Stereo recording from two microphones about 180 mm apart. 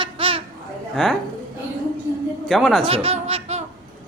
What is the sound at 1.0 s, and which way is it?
Speech, 5° left (ahead or behind).